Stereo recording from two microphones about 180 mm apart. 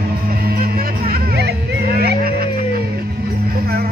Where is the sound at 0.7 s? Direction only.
55° right (ahead or behind).